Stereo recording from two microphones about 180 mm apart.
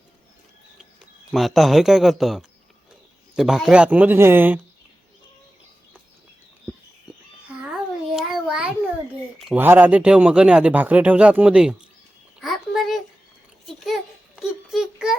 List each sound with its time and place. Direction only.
1.3 s speech: centre (ahead or behind)
7.6 s babbling: centre (ahead or behind)
9.4 s speech: 10° right (ahead or behind)
12.4 s a sound: centre (ahead or behind)